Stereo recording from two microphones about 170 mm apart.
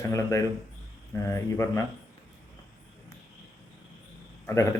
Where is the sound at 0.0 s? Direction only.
15° left (ahead or behind).